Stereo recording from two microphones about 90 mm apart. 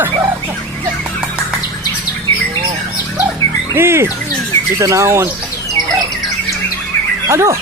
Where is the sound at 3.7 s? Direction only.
30° right (ahead or behind).